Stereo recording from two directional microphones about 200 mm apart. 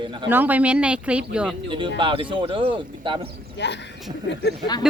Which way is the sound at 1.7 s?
25° right (ahead or behind).